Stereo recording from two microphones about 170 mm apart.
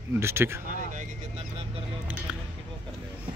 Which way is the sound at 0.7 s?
45° right (ahead or behind).